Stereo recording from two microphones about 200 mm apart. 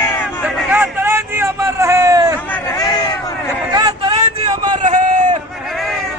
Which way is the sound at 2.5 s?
15° left (ahead or behind).